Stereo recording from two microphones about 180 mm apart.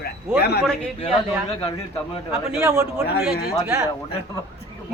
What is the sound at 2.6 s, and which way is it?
Speech, 15° right (ahead or behind).